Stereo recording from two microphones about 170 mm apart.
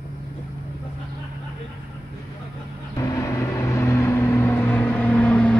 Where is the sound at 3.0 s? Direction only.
20° left (ahead or behind).